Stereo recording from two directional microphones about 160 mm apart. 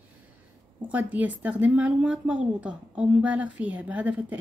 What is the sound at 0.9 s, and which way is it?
A woman's voice, 10° right (ahead or behind).